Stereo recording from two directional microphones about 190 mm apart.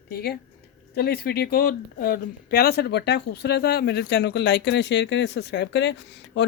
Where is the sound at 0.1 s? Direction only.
55° left (ahead or behind).